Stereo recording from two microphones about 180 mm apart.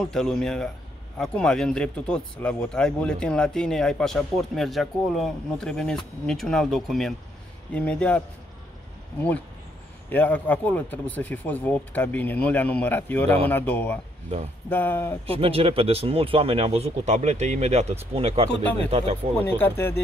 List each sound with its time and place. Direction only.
0.0 s speech: 5° left (ahead or behind)
10.0 s speech: 10° left (ahead or behind)
15.2 s speech: 30° right (ahead or behind)
19.3 s speech: 10° left (ahead or behind)